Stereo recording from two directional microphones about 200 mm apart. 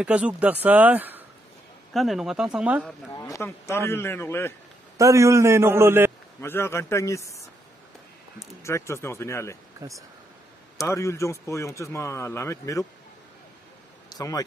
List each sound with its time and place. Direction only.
0.0 s speech: 5° right (ahead or behind)
3.2 s a man's voice: 15° left (ahead or behind)
4.9 s speech: 15° right (ahead or behind)
6.4 s a man's voice: 10° left (ahead or behind)
8.6 s a man's voice: 15° left (ahead or behind)
9.8 s speech: 15° right (ahead or behind)
10.9 s a man's voice: 15° left (ahead or behind)
14.0 s a sound: 20° left (ahead or behind)